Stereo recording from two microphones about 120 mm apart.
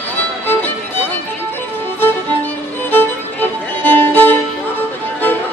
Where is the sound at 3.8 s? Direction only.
15° left (ahead or behind).